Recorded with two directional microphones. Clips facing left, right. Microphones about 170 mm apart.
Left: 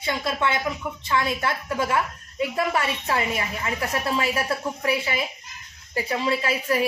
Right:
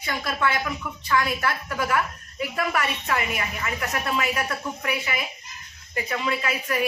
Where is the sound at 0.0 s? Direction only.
25° left (ahead or behind).